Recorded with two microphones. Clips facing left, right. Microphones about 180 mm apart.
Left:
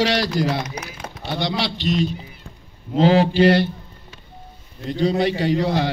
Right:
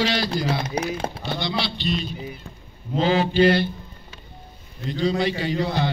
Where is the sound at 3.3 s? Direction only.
75° left (ahead or behind).